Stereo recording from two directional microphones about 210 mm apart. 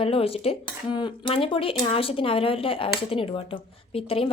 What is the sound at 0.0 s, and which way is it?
Speech, 25° left (ahead or behind).